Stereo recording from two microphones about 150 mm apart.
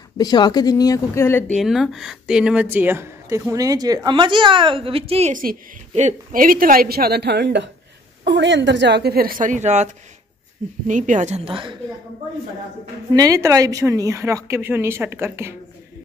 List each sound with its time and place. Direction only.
0.2 s speech: 25° left (ahead or behind)
1.5 s speech: centre (ahead or behind); by 5.3 s 40° right (ahead or behind)
5.3 s a woman's voice: 70° right (ahead or behind)
5.9 s a woman's voice: 60° right (ahead or behind); by 7.4 s 90° right
8.9 s a woman's voice: 90° right; by 11.8 s 35° right (ahead or behind)
13.1 s speech: 25° right (ahead or behind)